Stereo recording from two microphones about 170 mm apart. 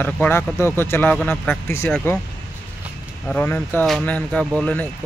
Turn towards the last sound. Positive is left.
turn(degrees=5)  # may be behind; listen again after turning